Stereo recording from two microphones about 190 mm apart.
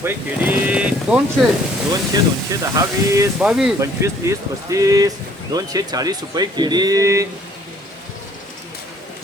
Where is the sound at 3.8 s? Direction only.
15° right (ahead or behind).